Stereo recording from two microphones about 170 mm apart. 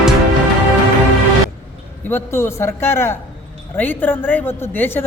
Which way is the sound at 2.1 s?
15° left (ahead or behind).